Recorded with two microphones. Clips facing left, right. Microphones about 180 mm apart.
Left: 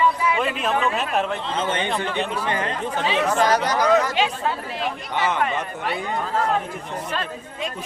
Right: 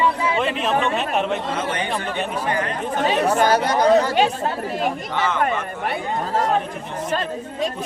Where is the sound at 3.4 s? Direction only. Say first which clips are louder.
Right 3 dB; 25° right (ahead or behind); by 4.9 s 45° right (ahead or behind).